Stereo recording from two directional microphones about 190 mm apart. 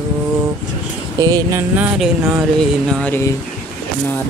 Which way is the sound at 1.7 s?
10° right (ahead or behind).